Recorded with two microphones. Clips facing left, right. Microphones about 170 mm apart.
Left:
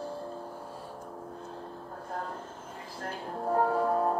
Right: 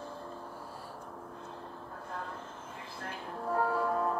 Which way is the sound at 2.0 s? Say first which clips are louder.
Left 4 dB; 40° left (ahead or behind).